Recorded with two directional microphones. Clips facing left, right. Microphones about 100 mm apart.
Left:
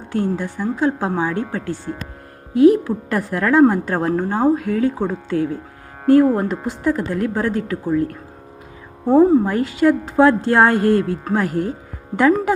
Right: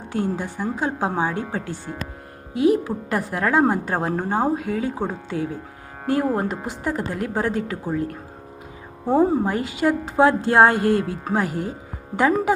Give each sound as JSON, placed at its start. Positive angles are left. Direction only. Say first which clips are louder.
{"t": 0.1, "sound": "a woman's voice", "louder": "left 4 dB", "side_deg": -15}
{"t": 9.1, "sound": "a woman's voice", "louder": "left 6 dB", "side_deg": -15}